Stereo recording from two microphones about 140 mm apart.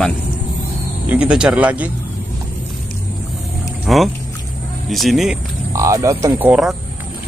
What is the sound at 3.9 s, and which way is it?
Speech, centre (ahead or behind).